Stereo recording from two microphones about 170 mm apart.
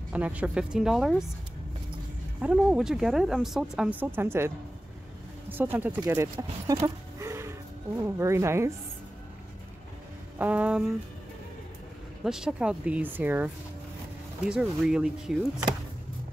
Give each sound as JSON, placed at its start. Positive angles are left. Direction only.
{"t": 0.1, "sound": "speech", "side_deg": -10}
{"t": 2.4, "sound": "speech", "side_deg": -5}
{"t": 5.5, "sound": "speech", "side_deg": -10}
{"t": 10.4, "sound": "speech", "side_deg": -10}
{"t": 12.3, "sound": "speech", "side_deg": -5}